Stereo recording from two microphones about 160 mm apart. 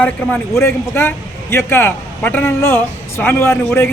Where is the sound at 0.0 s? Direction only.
10° left (ahead or behind).